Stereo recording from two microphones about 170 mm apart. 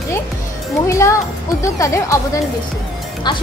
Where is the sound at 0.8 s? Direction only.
15° left (ahead or behind).